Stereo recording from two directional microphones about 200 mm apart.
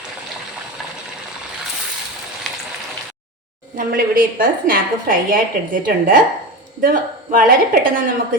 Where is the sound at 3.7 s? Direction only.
45° right (ahead or behind).